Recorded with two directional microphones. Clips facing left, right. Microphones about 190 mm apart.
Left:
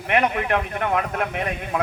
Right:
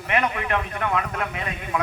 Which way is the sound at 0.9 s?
50° left (ahead or behind).